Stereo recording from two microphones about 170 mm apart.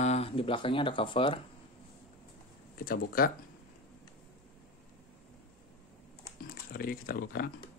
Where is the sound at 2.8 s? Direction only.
60° left (ahead or behind).